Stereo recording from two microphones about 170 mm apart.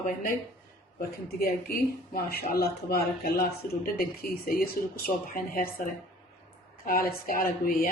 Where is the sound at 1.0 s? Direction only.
60° left (ahead or behind).